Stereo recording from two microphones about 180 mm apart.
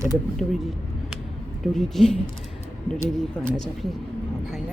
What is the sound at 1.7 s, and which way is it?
Speech, centre (ahead or behind).